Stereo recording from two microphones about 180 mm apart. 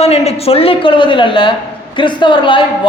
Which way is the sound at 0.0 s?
35° left (ahead or behind).